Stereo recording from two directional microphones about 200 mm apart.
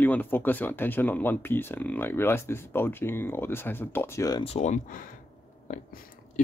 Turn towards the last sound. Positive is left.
turn(degrees=40)  # may be behind; listen again after turning